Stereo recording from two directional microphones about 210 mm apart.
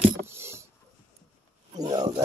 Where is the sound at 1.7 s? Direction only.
20° right (ahead or behind).